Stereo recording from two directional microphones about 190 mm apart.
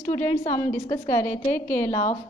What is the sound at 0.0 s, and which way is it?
A woman's voice, 15° left (ahead or behind).